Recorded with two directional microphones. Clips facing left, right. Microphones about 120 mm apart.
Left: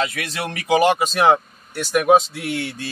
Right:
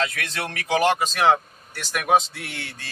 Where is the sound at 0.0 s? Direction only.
10° left (ahead or behind).